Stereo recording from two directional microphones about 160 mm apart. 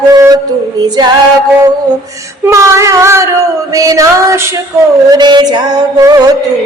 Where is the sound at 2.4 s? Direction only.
20° right (ahead or behind).